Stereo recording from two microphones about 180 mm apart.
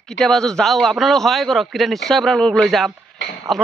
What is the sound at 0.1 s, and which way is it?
A man's voice, 5° left (ahead or behind).